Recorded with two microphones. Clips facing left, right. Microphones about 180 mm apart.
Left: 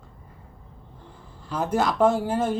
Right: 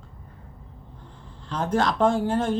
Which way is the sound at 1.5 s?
5° left (ahead or behind).